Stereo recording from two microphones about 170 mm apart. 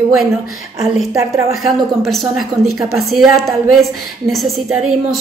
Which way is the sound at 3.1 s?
Centre (ahead or behind).